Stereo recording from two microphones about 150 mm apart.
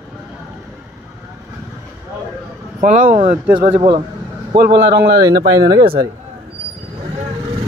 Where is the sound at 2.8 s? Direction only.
60° right (ahead or behind).